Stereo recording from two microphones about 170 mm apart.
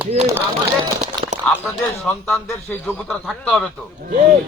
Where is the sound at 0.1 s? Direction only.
40° right (ahead or behind).